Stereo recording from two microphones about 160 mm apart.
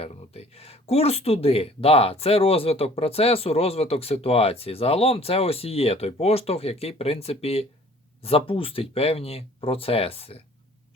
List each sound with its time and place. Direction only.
0.0 s speech: 40° left (ahead or behind)